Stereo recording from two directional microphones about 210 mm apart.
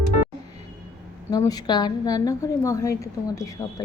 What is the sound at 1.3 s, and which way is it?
A woman's voice, 15° left (ahead or behind).